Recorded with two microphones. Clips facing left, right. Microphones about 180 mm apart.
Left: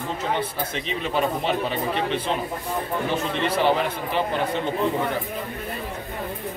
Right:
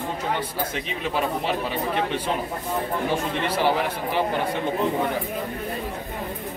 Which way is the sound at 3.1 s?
10° right (ahead or behind).